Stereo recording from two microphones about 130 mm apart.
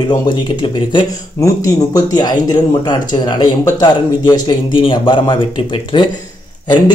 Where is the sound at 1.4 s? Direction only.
25° left (ahead or behind).